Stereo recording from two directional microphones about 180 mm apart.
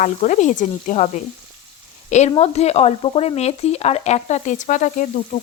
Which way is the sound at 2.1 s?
35° left (ahead or behind).